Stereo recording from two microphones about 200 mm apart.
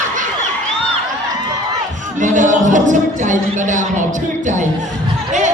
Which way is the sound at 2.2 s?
40° right (ahead or behind).